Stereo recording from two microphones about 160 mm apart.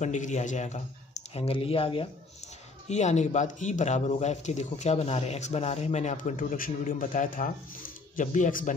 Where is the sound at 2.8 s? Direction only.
45° left (ahead or behind).